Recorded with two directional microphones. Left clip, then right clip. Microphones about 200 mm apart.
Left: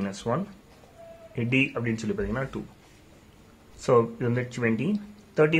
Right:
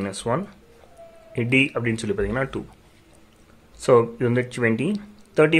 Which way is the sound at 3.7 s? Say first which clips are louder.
Right 5 dB; 20° right (ahead or behind).